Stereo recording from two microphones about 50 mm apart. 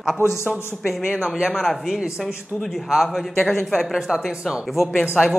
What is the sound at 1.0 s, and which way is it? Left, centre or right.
Speech, centre.